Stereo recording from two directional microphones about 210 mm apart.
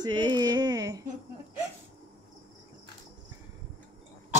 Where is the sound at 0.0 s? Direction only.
20° right (ahead or behind).